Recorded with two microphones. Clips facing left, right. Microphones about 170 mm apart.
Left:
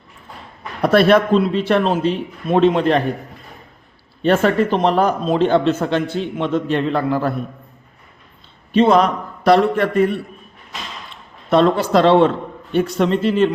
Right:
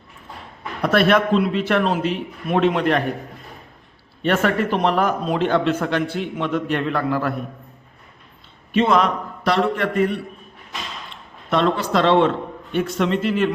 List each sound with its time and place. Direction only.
0.8 s speech: 35° left (ahead or behind)
4.2 s a man's voice: 30° left (ahead or behind)
8.7 s a man's voice: 35° left (ahead or behind)
11.5 s speech: 40° left (ahead or behind)